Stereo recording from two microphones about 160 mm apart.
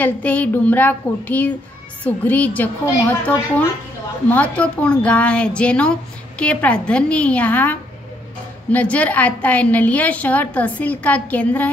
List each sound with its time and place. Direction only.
0.0 s speech: 10° left (ahead or behind)